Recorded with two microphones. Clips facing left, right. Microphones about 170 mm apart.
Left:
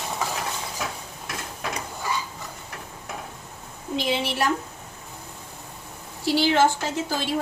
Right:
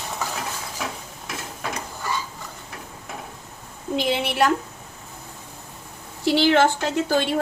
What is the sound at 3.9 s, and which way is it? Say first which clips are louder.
Speech: right 2 dB; 55° right (ahead or behind).